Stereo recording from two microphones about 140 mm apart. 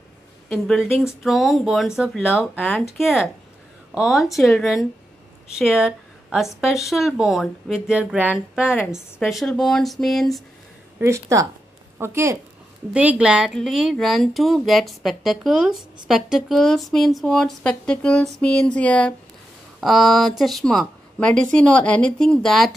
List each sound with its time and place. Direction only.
0.5 s speech: 5° left (ahead or behind)
3.9 s a woman's voice: 5° right (ahead or behind)
11.0 s speech: 20° right (ahead or behind)
13.2 s speech: 5° right (ahead or behind)